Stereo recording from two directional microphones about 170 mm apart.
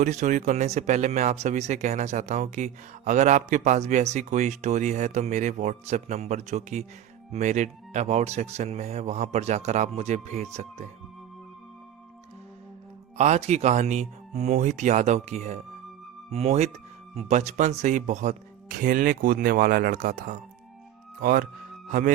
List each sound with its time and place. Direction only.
0.0 s speech: 45° right (ahead or behind)
13.1 s speech: 40° right (ahead or behind)